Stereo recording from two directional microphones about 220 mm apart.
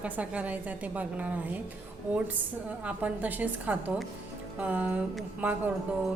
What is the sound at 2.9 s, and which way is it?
A woman's voice, 5° right (ahead or behind).